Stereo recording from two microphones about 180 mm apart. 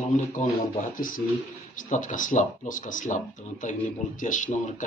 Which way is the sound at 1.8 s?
45° left (ahead or behind).